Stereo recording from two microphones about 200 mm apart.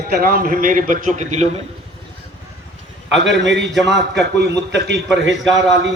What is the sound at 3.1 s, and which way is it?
Speech, 65° right (ahead or behind).